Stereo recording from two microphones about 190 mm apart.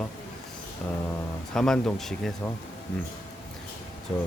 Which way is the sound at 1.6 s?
5° left (ahead or behind).